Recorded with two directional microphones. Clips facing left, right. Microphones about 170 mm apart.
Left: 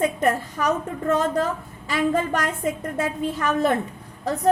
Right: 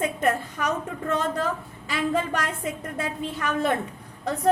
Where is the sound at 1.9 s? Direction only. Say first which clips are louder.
Left 3 dB; 45° left (ahead or behind).